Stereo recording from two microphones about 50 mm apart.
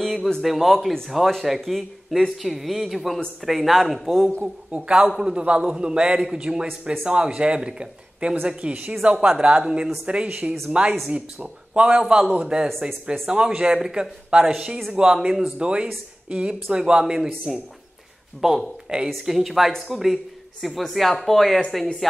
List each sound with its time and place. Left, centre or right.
0.0 s a sound: centre
0.4 s speech: centre
4.4 s a man's voice: right
15.6 s a man's voice: centre
18.4 s speech: centre